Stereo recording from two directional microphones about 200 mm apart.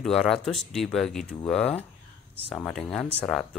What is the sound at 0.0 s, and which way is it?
Speech, centre (ahead or behind).